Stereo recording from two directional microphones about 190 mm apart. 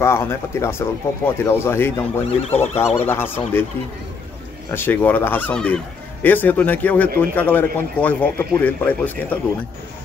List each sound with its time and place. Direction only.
0.0 s speech: 15° left (ahead or behind)
2.5 s speech: 35° left (ahead or behind)
3.1 s speech: 10° left (ahead or behind)
4.6 s speech: 10° left (ahead or behind)